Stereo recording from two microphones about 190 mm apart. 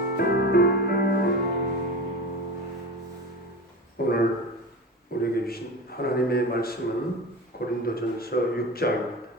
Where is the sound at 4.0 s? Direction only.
55° left (ahead or behind).